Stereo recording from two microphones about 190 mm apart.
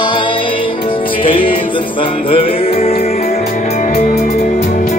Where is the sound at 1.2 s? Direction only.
25° left (ahead or behind).